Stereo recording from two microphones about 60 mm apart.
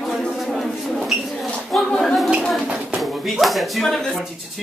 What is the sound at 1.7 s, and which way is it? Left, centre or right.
Speech, centre.